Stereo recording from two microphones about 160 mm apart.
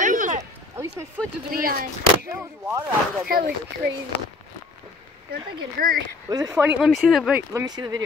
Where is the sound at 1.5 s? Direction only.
65° right (ahead or behind).